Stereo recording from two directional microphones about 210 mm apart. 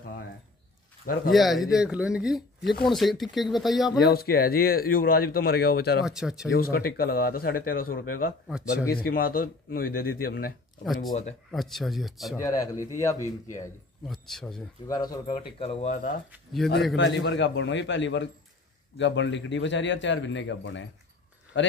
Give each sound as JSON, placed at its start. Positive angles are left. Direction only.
{"t": 1.3, "sound": "speech", "side_deg": 0}
{"t": 4.1, "sound": "speech", "side_deg": 45}
{"t": 6.0, "sound": "speech", "side_deg": -5}
{"t": 6.5, "sound": "speech", "side_deg": 45}
{"t": 8.5, "sound": "speech", "side_deg": -5}
{"t": 8.9, "sound": "speech", "side_deg": 45}
{"t": 11.5, "sound": "speech", "side_deg": 0}
{"t": 12.4, "sound": "a man's voice", "side_deg": 15}
{"t": 14.0, "sound": "speech", "side_deg": 0}
{"t": 14.9, "sound": "speech", "side_deg": 20}
{"t": 16.9, "sound": "a man's voice", "side_deg": 55}